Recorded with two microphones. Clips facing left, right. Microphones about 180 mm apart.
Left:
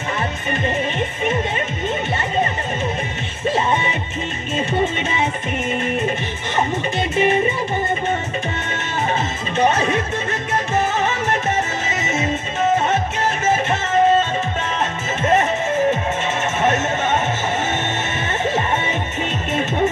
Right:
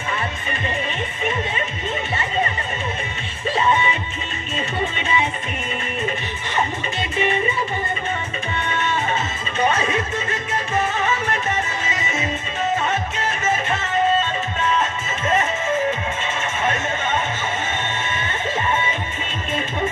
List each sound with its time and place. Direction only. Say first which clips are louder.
7.0 s music: left 4 dB; 45° left (ahead or behind)